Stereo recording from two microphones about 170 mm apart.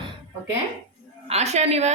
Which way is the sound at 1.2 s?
40° right (ahead or behind).